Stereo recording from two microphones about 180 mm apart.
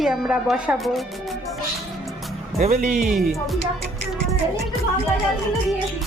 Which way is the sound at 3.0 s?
Centre (ahead or behind).